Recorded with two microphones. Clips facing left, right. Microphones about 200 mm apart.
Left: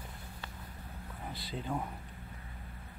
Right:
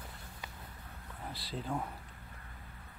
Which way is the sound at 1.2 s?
Centre (ahead or behind).